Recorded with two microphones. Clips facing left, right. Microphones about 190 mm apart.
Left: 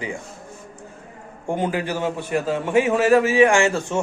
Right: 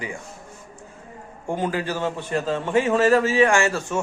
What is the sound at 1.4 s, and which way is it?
A man's voice, 20° left (ahead or behind).